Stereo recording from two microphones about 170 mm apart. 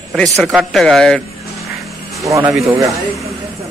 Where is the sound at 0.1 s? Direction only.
Centre (ahead or behind).